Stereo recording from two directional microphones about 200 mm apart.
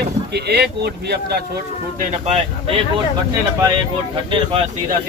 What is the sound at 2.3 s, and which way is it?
Speech, 30° right (ahead or behind).